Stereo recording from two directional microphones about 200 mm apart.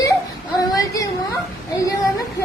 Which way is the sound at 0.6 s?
15° left (ahead or behind).